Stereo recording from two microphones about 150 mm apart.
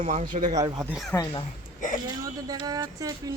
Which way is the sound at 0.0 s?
55° right (ahead or behind).